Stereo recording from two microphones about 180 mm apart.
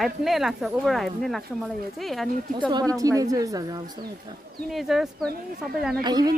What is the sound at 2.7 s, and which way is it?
Speech, 20° right (ahead or behind).